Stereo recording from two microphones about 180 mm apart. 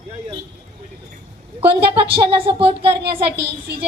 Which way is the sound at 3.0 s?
65° right (ahead or behind).